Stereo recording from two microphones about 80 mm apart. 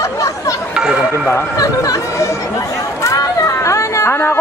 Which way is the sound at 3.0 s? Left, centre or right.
Left.